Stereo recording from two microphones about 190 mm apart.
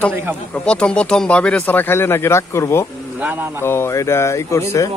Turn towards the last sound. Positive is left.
turn(degrees=15)  # may be behind; listen again after turning